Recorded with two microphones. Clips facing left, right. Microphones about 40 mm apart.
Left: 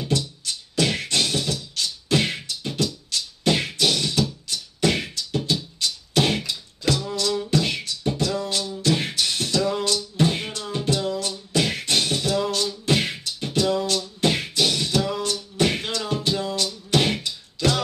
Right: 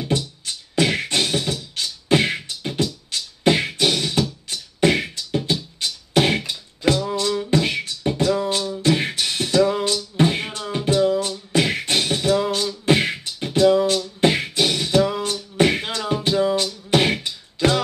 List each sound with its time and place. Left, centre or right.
0.1 s music: right
11.5 s beatboxing: right
15.5 s music: right
16.9 s beatboxing: right